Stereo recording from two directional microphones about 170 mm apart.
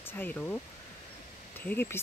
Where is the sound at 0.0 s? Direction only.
10° left (ahead or behind).